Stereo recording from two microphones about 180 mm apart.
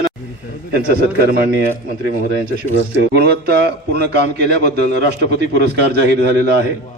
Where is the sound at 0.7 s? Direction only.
55° right (ahead or behind).